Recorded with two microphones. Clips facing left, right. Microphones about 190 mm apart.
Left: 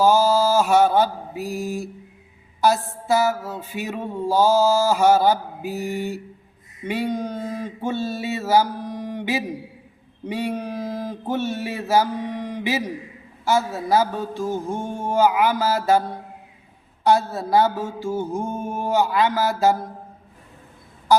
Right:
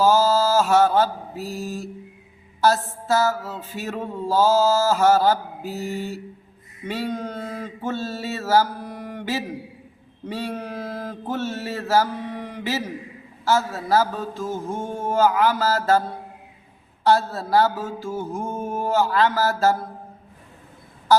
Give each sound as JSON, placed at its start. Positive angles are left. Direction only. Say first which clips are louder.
{"t": 0.0, "sound": "mantra", "louder": "left 1 dB", "side_deg": 15}
{"t": 2.6, "sound": "speech", "louder": "even", "side_deg": 15}
{"t": 6.8, "sound": "mantra", "louder": "left 3 dB", "side_deg": 15}
{"t": 10.2, "sound": "speech", "louder": "left 3 dB", "side_deg": 15}
{"t": 18.4, "sound": "mantra", "louder": "left 1 dB", "side_deg": -5}
{"t": 18.7, "sound": "speech", "louder": "even", "side_deg": 15}
{"t": 21.1, "sound": "a sound", "louder": "even", "side_deg": 15}